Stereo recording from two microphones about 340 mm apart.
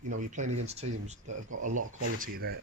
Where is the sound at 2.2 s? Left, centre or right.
Right.